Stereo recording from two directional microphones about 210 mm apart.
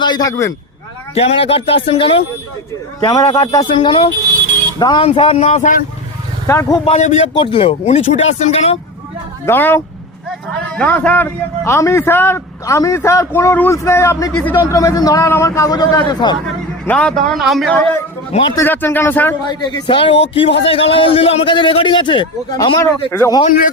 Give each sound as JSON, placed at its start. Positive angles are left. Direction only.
{"t": 0.0, "sound": "a man's voice", "side_deg": 20}
{"t": 1.1, "sound": "a man's voice", "side_deg": 30}
{"t": 6.5, "sound": "a man's voice", "side_deg": 15}
{"t": 9.5, "sound": "a man's voice", "side_deg": 10}
{"t": 16.8, "sound": "a man's voice", "side_deg": 5}
{"t": 18.3, "sound": "a man's voice", "side_deg": 30}
{"t": 18.5, "sound": "a man's voice", "side_deg": 10}
{"t": 19.5, "sound": "a man's voice", "side_deg": 20}